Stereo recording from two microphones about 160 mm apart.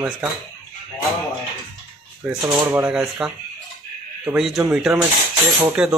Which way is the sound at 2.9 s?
5° right (ahead or behind).